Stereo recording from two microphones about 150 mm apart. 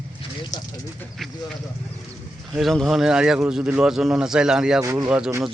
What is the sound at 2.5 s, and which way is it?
Speech, centre (ahead or behind).